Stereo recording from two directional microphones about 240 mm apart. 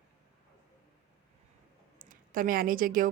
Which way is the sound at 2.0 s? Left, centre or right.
Right.